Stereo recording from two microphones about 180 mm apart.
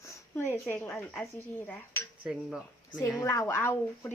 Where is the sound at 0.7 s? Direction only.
5° left (ahead or behind).